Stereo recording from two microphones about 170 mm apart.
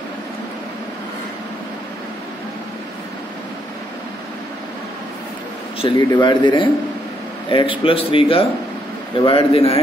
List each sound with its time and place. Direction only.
5.8 s speech: 30° left (ahead or behind)